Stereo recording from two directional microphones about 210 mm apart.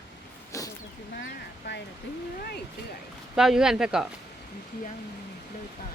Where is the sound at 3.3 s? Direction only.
Centre (ahead or behind).